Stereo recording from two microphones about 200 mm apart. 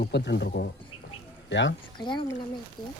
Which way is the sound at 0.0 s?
60° left (ahead or behind).